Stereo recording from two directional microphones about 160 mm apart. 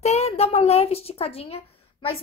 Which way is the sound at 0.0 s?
40° left (ahead or behind).